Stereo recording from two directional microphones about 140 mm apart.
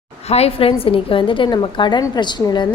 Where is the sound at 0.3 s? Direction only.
45° left (ahead or behind).